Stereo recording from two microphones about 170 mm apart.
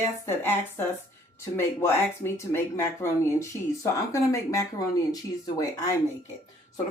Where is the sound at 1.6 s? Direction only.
15° left (ahead or behind).